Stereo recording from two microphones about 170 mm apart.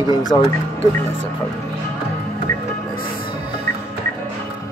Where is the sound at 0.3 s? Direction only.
25° left (ahead or behind).